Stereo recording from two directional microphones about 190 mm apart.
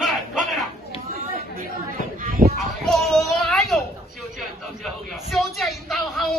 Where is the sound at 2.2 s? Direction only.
50° right (ahead or behind).